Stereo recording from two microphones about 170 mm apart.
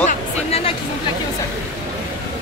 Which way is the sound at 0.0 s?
35° left (ahead or behind).